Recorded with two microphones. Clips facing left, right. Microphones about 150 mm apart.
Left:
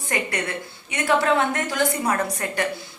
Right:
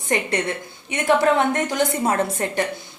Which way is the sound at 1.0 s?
20° right (ahead or behind).